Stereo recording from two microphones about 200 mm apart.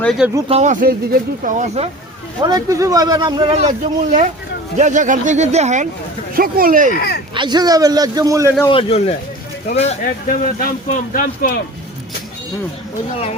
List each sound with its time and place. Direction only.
0.0 s speech: centre (ahead or behind)
0.3 s speech: 30° right (ahead or behind)
2.4 s speech: 20° right (ahead or behind); by 5.9 s 35° right (ahead or behind)
6.3 s speech: 45° right (ahead or behind)
6.9 s speech: 55° left (ahead or behind)
7.3 s speech: 20° right (ahead or behind)
8.6 s speech: 25° left (ahead or behind)
10.2 s speech: 45° left (ahead or behind)